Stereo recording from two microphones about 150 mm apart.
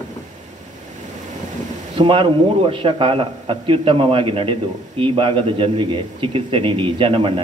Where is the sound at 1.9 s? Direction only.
35° right (ahead or behind).